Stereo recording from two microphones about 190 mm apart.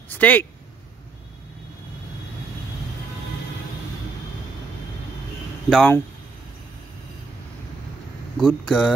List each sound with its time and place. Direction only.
0.1 s speech: 10° left (ahead or behind)
5.7 s speech: 5° left (ahead or behind)
8.4 s speech: 5° left (ahead or behind)